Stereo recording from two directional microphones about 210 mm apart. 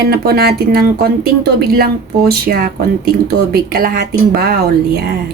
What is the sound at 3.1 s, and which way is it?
Speech, 45° right (ahead or behind).